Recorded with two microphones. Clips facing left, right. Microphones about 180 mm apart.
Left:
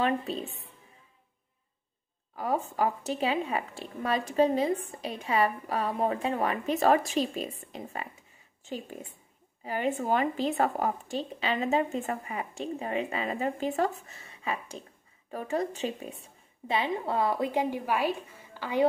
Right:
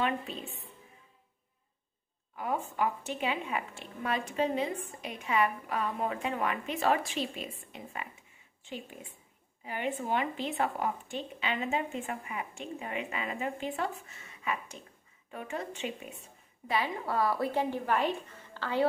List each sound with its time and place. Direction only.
0.0 s a woman's voice: 35° left (ahead or behind)
2.3 s a woman's voice: 35° left (ahead or behind); by 18.9 s 15° left (ahead or behind)